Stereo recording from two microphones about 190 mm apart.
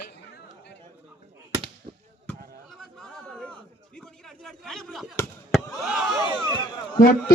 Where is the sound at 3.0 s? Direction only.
Centre (ahead or behind).